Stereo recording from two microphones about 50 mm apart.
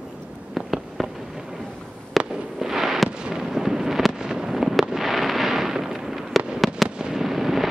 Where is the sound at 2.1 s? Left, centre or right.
Centre.